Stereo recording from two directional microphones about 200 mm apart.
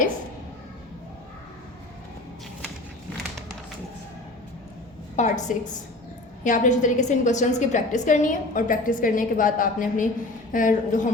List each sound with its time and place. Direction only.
5.1 s a woman's voice: 35° left (ahead or behind)